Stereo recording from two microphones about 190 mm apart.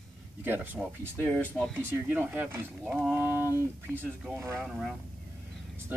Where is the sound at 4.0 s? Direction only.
10° right (ahead or behind).